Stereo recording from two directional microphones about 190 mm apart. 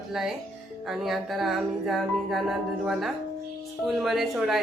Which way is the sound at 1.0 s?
Centre (ahead or behind).